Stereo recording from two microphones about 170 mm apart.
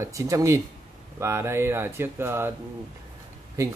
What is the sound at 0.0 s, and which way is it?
Speech, 20° right (ahead or behind).